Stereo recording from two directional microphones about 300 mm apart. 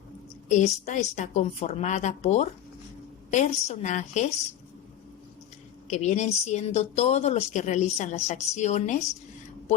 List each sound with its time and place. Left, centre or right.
0.4 s speech: left
5.9 s speech: left